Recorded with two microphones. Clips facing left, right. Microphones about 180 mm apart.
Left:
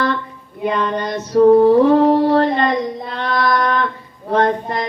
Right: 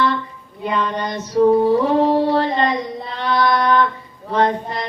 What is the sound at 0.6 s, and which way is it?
Female singing, 60° left (ahead or behind).